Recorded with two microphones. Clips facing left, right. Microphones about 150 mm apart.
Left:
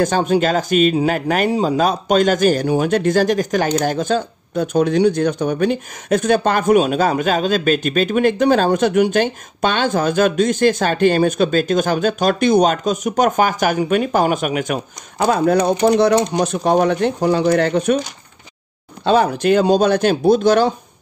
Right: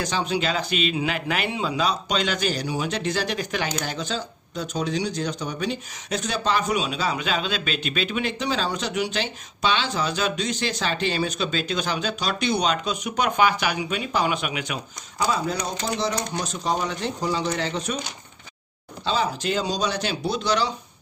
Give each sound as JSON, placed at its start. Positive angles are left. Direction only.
{"t": 0.0, "sound": "speech", "side_deg": 50}
{"t": 19.0, "sound": "speech", "side_deg": 55}